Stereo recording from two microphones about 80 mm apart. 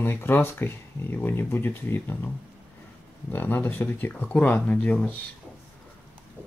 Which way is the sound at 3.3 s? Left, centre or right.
Left.